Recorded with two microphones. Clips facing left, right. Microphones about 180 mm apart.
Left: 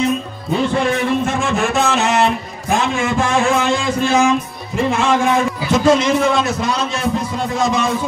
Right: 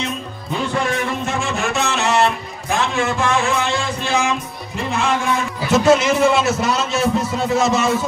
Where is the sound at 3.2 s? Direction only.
50° left (ahead or behind).